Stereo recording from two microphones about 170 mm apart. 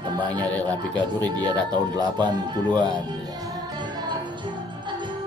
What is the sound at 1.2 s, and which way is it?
Speech, 25° right (ahead or behind).